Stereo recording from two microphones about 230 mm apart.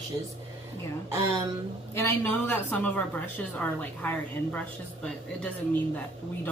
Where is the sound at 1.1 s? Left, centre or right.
Centre.